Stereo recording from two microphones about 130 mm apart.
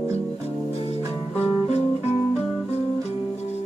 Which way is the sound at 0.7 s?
50° left (ahead or behind).